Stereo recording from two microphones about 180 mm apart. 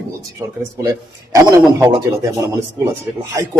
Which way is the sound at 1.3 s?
20° right (ahead or behind).